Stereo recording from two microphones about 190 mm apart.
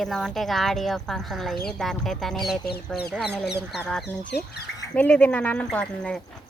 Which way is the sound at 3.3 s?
60° left (ahead or behind).